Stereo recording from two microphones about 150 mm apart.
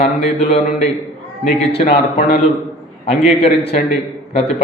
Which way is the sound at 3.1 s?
40° left (ahead or behind).